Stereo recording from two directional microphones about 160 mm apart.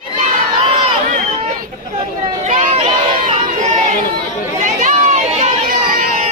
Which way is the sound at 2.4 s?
45° right (ahead or behind).